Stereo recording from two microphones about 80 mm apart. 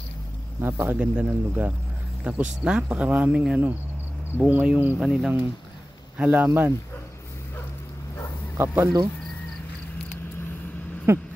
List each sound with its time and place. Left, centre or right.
0.6 s speech: right
0.9 s speech: centre
5.0 s speech: centre
6.1 s speech: right
8.5 s speech: right
11.1 s speech: right